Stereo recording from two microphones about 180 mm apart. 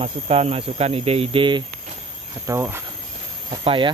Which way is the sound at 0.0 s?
35° right (ahead or behind).